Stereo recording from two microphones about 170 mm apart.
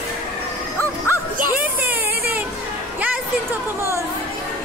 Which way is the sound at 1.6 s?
10° right (ahead or behind).